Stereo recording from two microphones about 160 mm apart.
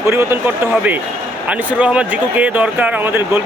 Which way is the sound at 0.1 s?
15° right (ahead or behind).